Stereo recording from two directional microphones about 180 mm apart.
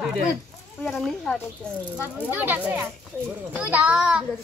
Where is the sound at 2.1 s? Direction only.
10° right (ahead or behind).